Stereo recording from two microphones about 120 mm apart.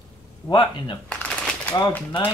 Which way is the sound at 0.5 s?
40° left (ahead or behind).